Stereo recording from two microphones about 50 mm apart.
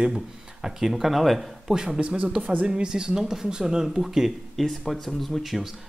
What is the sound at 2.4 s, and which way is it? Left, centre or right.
Speech, right.